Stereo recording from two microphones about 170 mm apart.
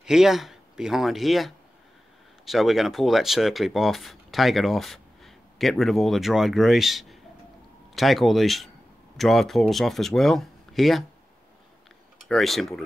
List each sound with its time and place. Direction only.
0.0 s speech: 5° right (ahead or behind)
12.3 s speech: centre (ahead or behind)